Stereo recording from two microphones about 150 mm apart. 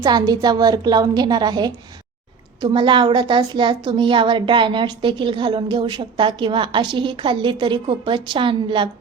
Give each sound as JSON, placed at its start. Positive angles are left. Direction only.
{"t": 0.0, "sound": "a woman's voice", "side_deg": -25}